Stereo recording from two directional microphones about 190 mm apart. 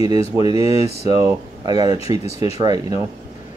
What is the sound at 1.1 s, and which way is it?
Speech, 20° right (ahead or behind).